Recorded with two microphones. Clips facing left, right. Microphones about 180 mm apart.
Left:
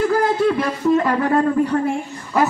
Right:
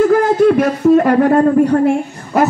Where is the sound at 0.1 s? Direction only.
50° right (ahead or behind).